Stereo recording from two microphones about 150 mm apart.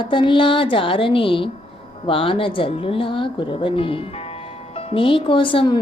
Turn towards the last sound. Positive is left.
turn(degrees=35)  # may be behind; listen again after turning